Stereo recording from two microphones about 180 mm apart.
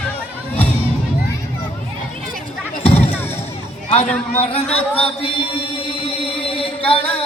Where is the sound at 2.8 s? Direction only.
35° left (ahead or behind).